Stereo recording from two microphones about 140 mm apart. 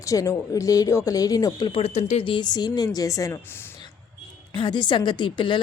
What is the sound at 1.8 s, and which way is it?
Speech, 55° left (ahead or behind).